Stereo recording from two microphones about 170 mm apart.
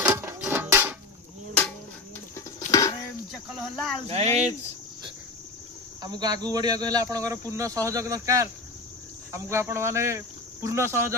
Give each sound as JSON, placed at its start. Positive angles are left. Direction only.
{"t": 0.1, "sound": "a sound", "side_deg": -15}
{"t": 2.3, "sound": "a sound", "side_deg": 20}
{"t": 3.5, "sound": "cricket", "side_deg": 0}
{"t": 4.0, "sound": "speech", "side_deg": -40}
{"t": 6.0, "sound": "speech", "side_deg": -25}
{"t": 9.3, "sound": "cricket", "side_deg": -15}